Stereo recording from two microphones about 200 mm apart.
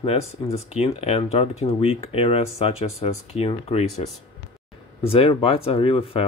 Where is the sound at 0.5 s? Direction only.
30° left (ahead or behind).